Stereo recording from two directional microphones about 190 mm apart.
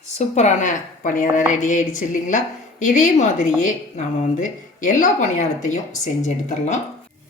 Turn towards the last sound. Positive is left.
turn(degrees=40)  # may be behind; listen again after turning